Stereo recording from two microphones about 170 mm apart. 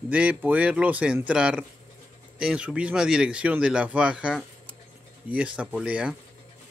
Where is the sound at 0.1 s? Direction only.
10° right (ahead or behind).